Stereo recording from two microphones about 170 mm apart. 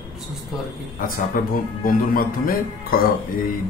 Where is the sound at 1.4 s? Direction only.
55° left (ahead or behind).